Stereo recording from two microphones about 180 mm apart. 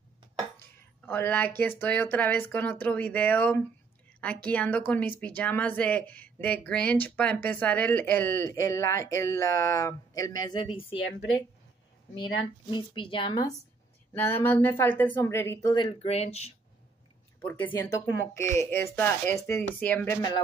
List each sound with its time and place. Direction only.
0.6 s a woman's voice: 10° left (ahead or behind); by 11.0 s 30° left (ahead or behind)
12.7 s speech: 30° left (ahead or behind)
14.1 s a woman's voice: 10° left (ahead or behind)
16.0 s speech: 35° left (ahead or behind)
17.4 s a woman's voice: 10° left (ahead or behind)
20.2 s speech: 20° left (ahead or behind)